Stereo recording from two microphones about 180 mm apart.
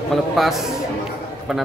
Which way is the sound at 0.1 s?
Centre (ahead or behind).